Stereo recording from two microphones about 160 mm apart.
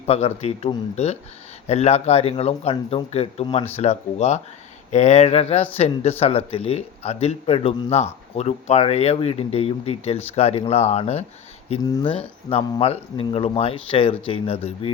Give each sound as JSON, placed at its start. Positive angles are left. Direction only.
{"t": 0.1, "sound": "speech", "side_deg": 40}
{"t": 11.8, "sound": "speech", "side_deg": 30}